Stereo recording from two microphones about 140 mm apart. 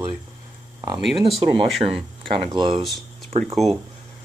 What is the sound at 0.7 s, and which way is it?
Speech, 30° right (ahead or behind).